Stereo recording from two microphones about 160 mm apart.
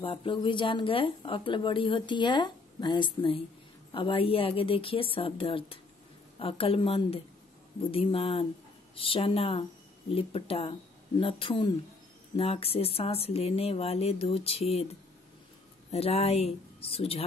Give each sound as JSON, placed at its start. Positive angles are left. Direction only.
{"t": 0.0, "sound": "speech", "side_deg": 35}
{"t": 15.9, "sound": "speech", "side_deg": 40}